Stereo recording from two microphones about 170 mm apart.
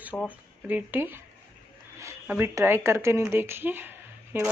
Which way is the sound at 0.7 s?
10° right (ahead or behind).